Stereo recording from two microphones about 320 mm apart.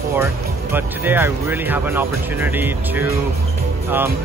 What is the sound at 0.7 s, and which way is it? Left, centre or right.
Speech, centre.